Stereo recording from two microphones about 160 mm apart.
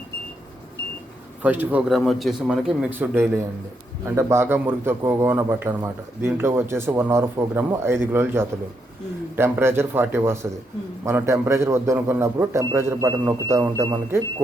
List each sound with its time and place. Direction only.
1.4 s a man's voice: 10° right (ahead or behind)